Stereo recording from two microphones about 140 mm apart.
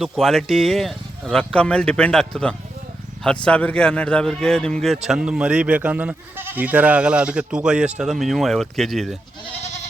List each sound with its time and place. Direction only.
0.0 s speech: centre (ahead or behind)